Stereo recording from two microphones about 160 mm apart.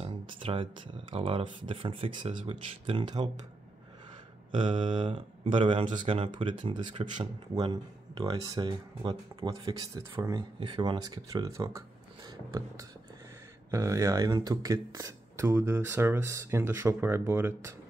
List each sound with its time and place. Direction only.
0.0 s a sound: 35° right (ahead or behind)
1.1 s speech: 35° right (ahead or behind)
4.5 s speech: 30° right (ahead or behind)
13.7 s speech: 20° right (ahead or behind)